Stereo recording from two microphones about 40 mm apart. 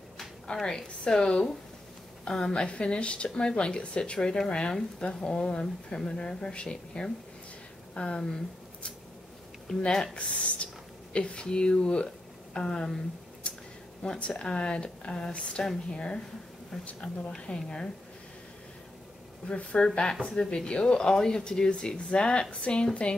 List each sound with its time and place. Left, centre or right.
0.7 s speech: left
9.7 s speech: centre
10.1 s speech: left
16.7 s speech: centre
19.4 s speech: left